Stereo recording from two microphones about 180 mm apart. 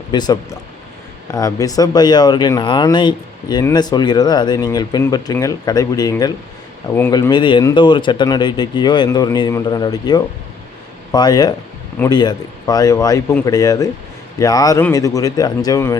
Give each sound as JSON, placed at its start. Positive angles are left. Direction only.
{"t": 0.1, "sound": "speech", "side_deg": 25}